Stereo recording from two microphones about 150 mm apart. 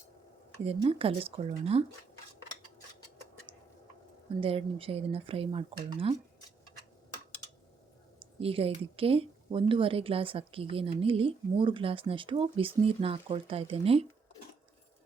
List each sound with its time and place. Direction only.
0.9 s speech: 40° right (ahead or behind)
4.4 s speech: 40° right (ahead or behind)
8.2 s speech: 40° right (ahead or behind)